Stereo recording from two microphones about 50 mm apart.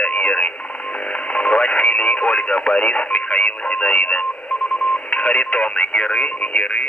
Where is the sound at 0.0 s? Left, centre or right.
Left.